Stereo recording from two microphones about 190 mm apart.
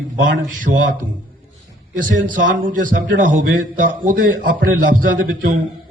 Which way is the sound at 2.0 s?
45° right (ahead or behind).